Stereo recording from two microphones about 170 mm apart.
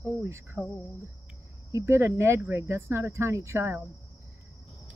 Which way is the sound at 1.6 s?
15° right (ahead or behind).